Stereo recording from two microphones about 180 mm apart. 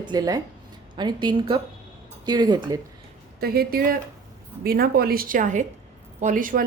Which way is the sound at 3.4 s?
55° right (ahead or behind).